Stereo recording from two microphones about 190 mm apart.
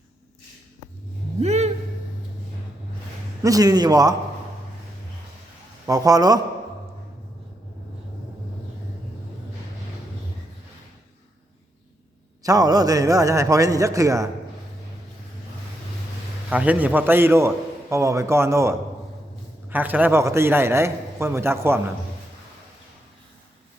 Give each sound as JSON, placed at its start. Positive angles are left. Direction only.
{"t": 1.4, "sound": "a sound", "side_deg": -35}
{"t": 3.4, "sound": "a man's voice", "side_deg": -20}
{"t": 5.8, "sound": "a man's voice", "side_deg": -20}
{"t": 12.4, "sound": "a man's voice", "side_deg": -20}
{"t": 16.5, "sound": "a man's voice", "side_deg": -10}